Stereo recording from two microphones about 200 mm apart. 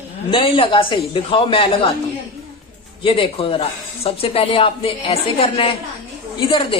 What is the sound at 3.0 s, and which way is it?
Speech, 25° left (ahead or behind).